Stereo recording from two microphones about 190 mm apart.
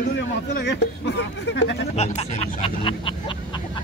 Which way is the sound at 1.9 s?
35° left (ahead or behind).